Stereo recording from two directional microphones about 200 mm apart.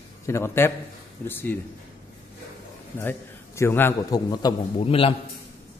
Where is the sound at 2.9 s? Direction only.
10° left (ahead or behind); by 5.1 s 30° left (ahead or behind).